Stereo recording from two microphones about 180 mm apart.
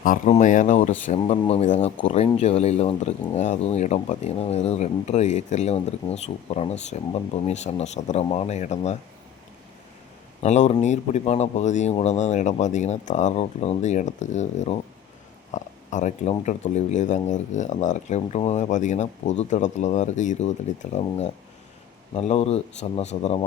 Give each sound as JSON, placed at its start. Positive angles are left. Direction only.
{"t": 0.0, "sound": "speech", "side_deg": 45}
{"t": 10.4, "sound": "speech", "side_deg": 40}